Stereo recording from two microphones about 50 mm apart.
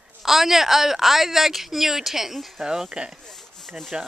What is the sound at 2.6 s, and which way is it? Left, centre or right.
Speech, centre.